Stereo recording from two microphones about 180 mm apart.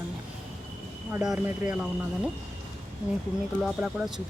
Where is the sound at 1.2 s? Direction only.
5° right (ahead or behind).